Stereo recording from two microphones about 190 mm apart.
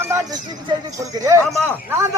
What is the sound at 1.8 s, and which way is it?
Speech, 15° right (ahead or behind).